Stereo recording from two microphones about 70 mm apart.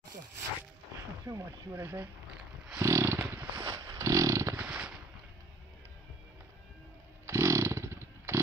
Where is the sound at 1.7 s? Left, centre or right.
Right.